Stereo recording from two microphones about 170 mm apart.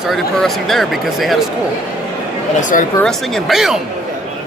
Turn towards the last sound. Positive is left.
turn(degrees=0)  # may be behind; listen again after turning